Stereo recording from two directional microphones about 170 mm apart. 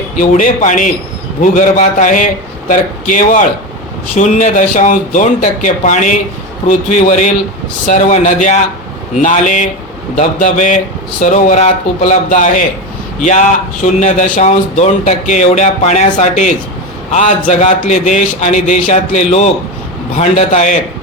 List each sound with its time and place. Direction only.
0.2 s speech: 50° left (ahead or behind)